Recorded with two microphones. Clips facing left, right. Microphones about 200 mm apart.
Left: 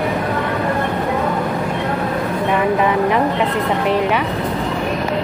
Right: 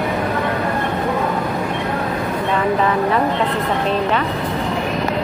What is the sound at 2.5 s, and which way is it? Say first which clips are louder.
Speech: left 1 dB; 15° left (ahead or behind).